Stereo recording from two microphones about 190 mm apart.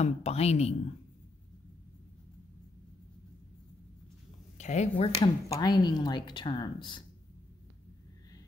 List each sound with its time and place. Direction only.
0.0 s speech: 35° left (ahead or behind)
4.6 s speech: 35° left (ahead or behind)
5.2 s speech: 20° left (ahead or behind)